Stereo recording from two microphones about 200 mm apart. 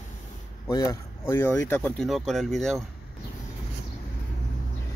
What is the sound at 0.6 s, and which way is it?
Speech, 15° left (ahead or behind).